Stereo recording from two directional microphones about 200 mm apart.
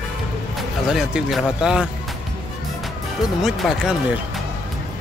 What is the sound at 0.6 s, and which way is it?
Speech, centre (ahead or behind).